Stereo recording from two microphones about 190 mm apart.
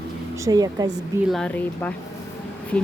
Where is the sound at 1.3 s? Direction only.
5° left (ahead or behind).